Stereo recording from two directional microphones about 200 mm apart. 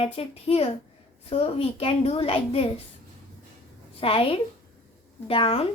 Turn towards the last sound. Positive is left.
turn(degrees=25)  # may be behind; listen again after turning